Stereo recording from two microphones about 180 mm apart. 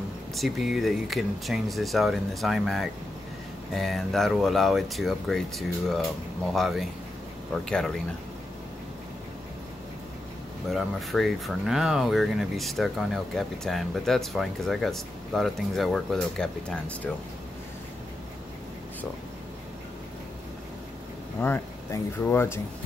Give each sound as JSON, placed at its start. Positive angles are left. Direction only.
{"t": 0.4, "sound": "speech", "side_deg": 0}
{"t": 10.7, "sound": "speech", "side_deg": 0}
{"t": 21.4, "sound": "speech", "side_deg": 10}